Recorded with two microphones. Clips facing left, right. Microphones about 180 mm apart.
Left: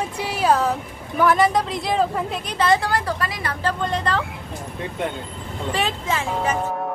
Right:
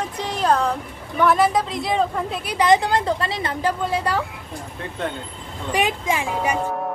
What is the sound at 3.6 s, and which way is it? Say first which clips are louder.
Speech: even; 10° right (ahead or behind).